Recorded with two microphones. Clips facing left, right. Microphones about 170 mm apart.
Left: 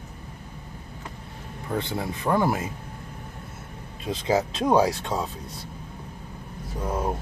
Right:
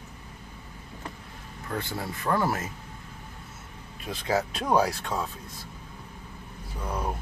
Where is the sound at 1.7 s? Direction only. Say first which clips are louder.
Left 4 dB; 20° left (ahead or behind).